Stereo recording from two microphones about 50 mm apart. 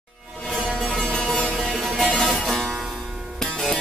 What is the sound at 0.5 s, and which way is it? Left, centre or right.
Music, centre.